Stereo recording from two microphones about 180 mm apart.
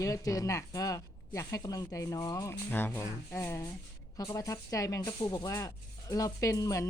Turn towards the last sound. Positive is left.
turn(degrees=20)  # may be behind; listen again after turning